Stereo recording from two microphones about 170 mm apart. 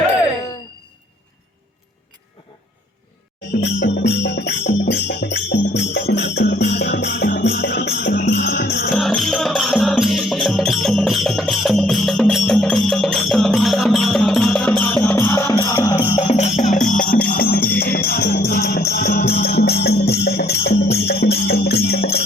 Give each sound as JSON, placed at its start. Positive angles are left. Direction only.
{"t": 3.5, "sound": "music", "side_deg": 80}
{"t": 9.0, "sound": "music", "side_deg": 0}
{"t": 16.1, "sound": "music", "side_deg": 35}